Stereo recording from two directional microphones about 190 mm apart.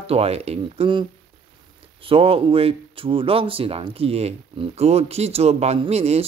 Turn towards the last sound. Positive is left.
turn(degrees=-35)  # may be behind; listen again after turning